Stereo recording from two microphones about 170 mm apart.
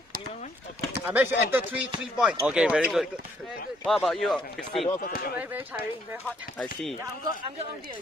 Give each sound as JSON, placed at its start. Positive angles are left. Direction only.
{"t": 1.0, "sound": "speech", "side_deg": -10}
{"t": 4.9, "sound": "speech", "side_deg": 55}
{"t": 6.2, "sound": "speech", "side_deg": 5}